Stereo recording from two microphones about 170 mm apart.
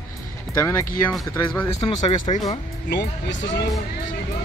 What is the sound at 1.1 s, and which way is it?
Speech, 5° left (ahead or behind).